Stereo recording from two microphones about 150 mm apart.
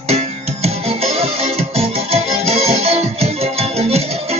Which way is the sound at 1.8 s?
40° right (ahead or behind).